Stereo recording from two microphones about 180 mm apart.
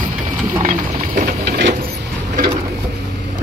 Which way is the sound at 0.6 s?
50° right (ahead or behind).